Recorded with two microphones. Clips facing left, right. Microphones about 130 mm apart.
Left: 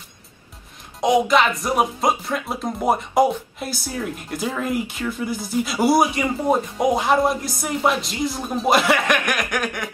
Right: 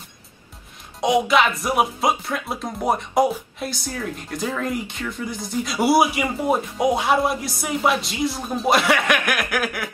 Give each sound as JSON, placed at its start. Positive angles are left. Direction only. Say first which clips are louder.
{"t": 1.0, "sound": "speech", "louder": "left 1 dB", "side_deg": 0}